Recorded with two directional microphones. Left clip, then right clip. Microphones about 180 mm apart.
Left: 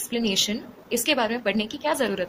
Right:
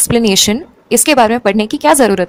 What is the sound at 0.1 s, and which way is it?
A woman's voice, 55° right (ahead or behind).